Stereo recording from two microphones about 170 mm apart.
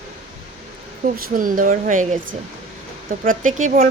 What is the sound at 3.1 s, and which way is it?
Speech, 50° right (ahead or behind).